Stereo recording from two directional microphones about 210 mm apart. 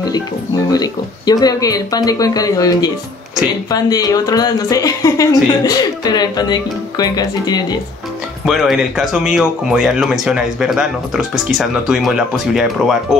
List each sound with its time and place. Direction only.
0.7 s speech: 20° left (ahead or behind)
8.5 s speech: centre (ahead or behind)